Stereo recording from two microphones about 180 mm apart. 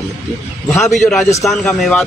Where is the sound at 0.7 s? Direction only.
Centre (ahead or behind).